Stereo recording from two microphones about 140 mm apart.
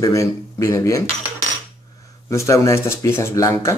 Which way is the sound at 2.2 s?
20° left (ahead or behind).